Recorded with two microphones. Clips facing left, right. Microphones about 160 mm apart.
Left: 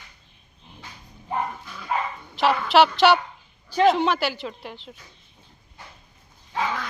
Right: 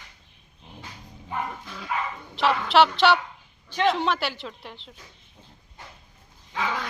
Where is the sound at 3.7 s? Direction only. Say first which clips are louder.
Left 5 dB; 35° left (ahead or behind).